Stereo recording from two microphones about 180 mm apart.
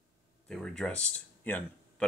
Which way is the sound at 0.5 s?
5° left (ahead or behind).